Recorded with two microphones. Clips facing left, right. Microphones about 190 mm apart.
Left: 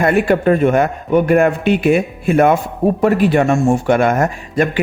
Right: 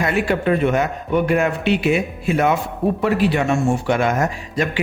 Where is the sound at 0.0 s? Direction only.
50° left (ahead or behind).